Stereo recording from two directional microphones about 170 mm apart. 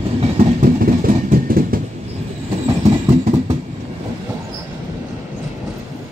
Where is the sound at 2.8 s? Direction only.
40° right (ahead or behind).